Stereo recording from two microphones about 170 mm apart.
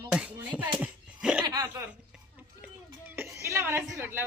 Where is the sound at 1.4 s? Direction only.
20° right (ahead or behind).